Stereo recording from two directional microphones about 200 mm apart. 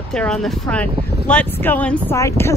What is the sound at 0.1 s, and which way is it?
A woman's voice, 5° left (ahead or behind).